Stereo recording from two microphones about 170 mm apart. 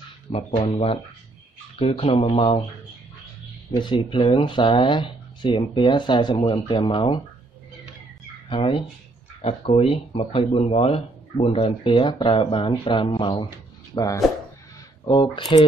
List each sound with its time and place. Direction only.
0.3 s speech: 35° left (ahead or behind)
3.7 s speech: 30° left (ahead or behind)
8.5 s speech: 30° left (ahead or behind)